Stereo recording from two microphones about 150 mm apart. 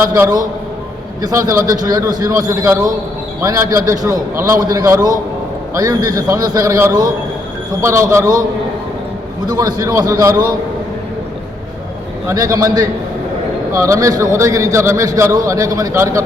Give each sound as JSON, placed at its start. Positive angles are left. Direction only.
{"t": 1.2, "sound": "a man's voice", "side_deg": -20}
{"t": 9.5, "sound": "a man's voice", "side_deg": -25}
{"t": 12.3, "sound": "a man's voice", "side_deg": -25}